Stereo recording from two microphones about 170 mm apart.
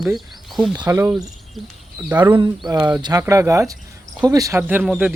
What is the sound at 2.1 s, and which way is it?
Speech, 25° right (ahead or behind).